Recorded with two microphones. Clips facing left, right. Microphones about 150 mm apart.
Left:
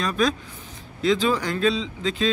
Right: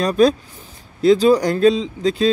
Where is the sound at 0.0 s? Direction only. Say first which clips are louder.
Right 8 dB; 35° right (ahead or behind).